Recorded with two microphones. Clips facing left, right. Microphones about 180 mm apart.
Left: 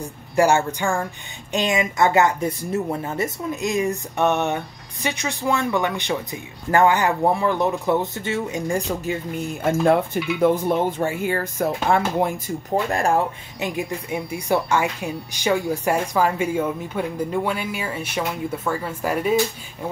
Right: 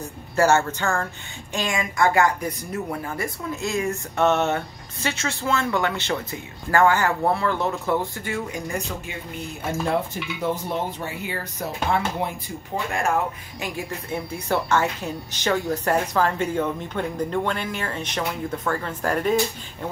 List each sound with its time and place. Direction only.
0.4 s speech: 15° left (ahead or behind); by 9.1 s 30° left (ahead or behind)
10.4 s speech: 55° left (ahead or behind); by 13.2 s 35° left (ahead or behind)
13.6 s speech: 15° left (ahead or behind)